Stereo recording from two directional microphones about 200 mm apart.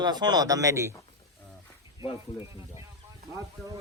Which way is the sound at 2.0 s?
25° left (ahead or behind).